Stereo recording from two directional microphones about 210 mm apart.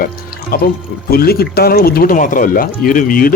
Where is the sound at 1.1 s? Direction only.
45° left (ahead or behind).